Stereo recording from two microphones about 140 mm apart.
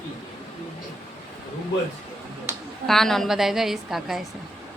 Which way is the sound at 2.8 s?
Centre (ahead or behind).